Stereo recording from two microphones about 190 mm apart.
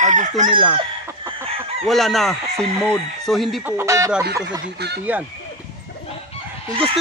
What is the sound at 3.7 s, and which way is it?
Chicken, 15° right (ahead or behind).